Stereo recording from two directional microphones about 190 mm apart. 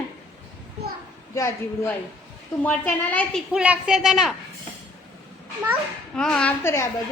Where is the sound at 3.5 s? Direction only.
5° right (ahead or behind).